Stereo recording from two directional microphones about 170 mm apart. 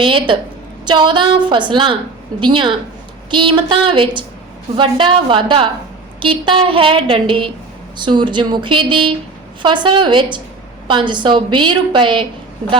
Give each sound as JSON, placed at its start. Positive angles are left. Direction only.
{"t": 0.0, "sound": "a woman's voice", "side_deg": -30}